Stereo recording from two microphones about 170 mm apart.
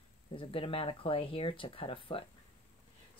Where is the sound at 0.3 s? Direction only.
30° left (ahead or behind).